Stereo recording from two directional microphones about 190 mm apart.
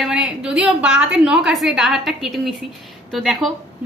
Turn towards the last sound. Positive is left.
turn(degrees=0)  # may be behind; listen again after turning